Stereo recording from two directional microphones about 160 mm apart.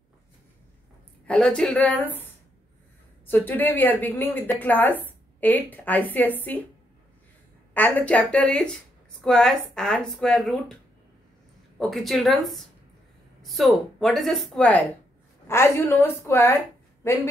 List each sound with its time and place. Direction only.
1.2 s speech: 5° left (ahead or behind)
3.3 s speech: 10° left (ahead or behind)
7.7 s speech: 10° left (ahead or behind)
11.8 s speech: centre (ahead or behind); by 16.5 s 15° left (ahead or behind)